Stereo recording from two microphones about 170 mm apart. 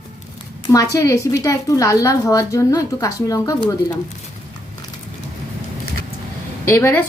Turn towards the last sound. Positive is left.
turn(degrees=15)  # may be behind; listen again after turning